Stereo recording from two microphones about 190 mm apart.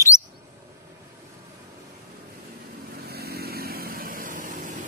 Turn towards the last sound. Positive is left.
turn(degrees=-45)  # may be behind; listen again after turning